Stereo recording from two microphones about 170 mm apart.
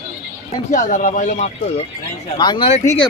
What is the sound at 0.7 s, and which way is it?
Speech, 50° left (ahead or behind).